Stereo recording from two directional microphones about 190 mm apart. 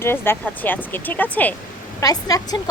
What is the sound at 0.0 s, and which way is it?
Speech, 10° left (ahead or behind).